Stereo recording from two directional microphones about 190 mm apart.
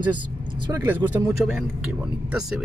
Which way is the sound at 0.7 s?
15° right (ahead or behind).